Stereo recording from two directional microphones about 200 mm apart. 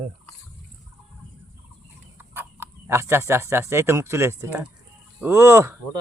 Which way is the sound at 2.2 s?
10° right (ahead or behind).